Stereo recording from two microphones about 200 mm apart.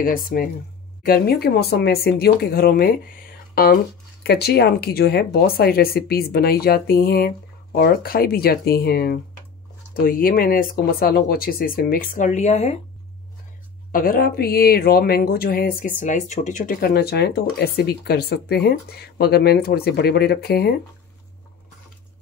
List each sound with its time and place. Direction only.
0.0 s speech: 45° left (ahead or behind)
13.9 s speech: 45° left (ahead or behind)